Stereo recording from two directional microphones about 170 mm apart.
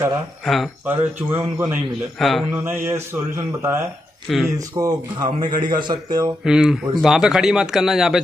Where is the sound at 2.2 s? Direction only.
Centre (ahead or behind).